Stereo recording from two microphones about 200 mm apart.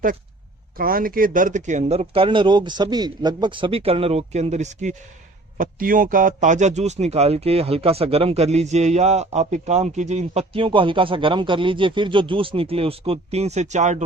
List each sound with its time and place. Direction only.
0.8 s speech: 45° right (ahead or behind)